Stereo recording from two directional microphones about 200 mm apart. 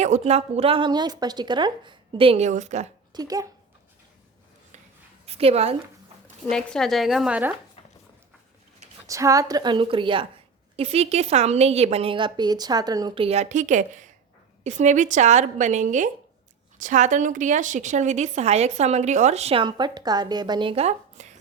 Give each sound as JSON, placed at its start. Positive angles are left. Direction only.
{"t": 0.0, "sound": "speech", "side_deg": -35}
{"t": 3.1, "sound": "speech", "side_deg": -20}
{"t": 5.2, "sound": "a woman's voice", "side_deg": -30}
{"t": 6.5, "sound": "a woman's voice", "side_deg": 5}
{"t": 9.0, "sound": "a woman's voice", "side_deg": -15}